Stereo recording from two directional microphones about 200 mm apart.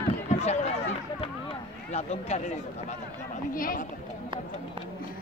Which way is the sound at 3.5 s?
45° left (ahead or behind).